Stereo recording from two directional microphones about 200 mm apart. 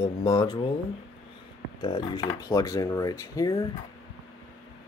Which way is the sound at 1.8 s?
20° left (ahead or behind).